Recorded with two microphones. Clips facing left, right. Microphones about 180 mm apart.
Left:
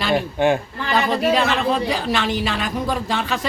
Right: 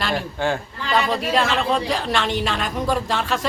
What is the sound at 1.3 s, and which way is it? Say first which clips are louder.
Speech: right 1 dB; centre (ahead or behind).